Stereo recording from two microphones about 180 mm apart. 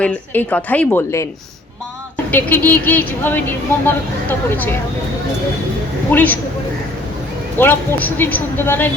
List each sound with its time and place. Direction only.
0.0 s speech: 10° left (ahead or behind)
2.3 s speech: 10° left (ahead or behind)
6.1 s speech: 10° left (ahead or behind)
7.6 s speech: 10° left (ahead or behind)